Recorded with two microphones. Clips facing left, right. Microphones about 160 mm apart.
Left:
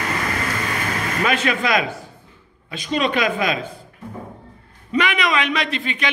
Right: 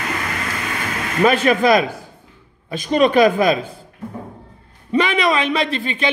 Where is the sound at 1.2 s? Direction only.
40° right (ahead or behind).